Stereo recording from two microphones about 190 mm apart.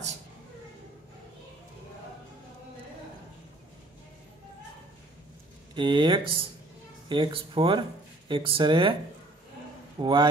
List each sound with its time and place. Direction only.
5.8 s speech: 25° right (ahead or behind)
9.9 s a man's voice: 25° right (ahead or behind)